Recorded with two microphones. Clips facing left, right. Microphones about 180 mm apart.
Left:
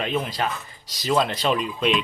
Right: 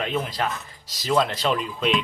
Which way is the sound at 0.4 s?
5° left (ahead or behind).